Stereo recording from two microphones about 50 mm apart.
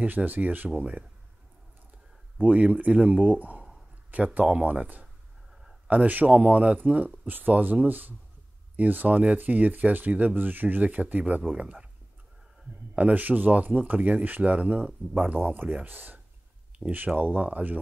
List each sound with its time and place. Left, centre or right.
0.0 s speech: right
2.3 s speech: right
12.9 s speech: right